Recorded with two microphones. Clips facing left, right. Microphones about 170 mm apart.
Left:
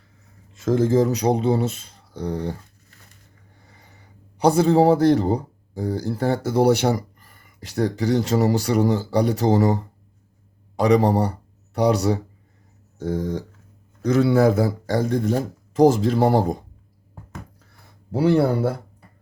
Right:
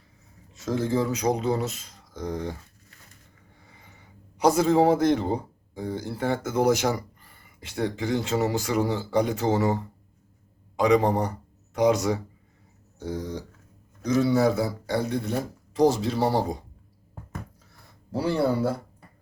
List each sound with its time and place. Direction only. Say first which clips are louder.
0.5 s speech: left 7 dB; 50° left (ahead or behind); by 2.6 s 35° left (ahead or behind)
3.6 s a man's voice: left 1 dB; 40° left (ahead or behind)
13.0 s speech: left 7 dB; 50° left (ahead or behind)
14.0 s speech: left 4 dB; 60° left (ahead or behind)
18.1 s speech: left 6 dB; 60° left (ahead or behind)